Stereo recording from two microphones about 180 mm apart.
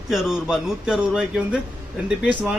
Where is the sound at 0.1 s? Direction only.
5° right (ahead or behind).